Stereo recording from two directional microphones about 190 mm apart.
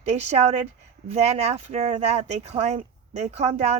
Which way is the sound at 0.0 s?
35° right (ahead or behind).